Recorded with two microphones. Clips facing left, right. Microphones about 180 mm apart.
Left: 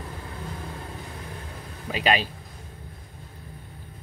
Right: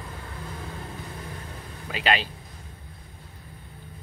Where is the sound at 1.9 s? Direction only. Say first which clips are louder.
Left 2 dB; 15° left (ahead or behind).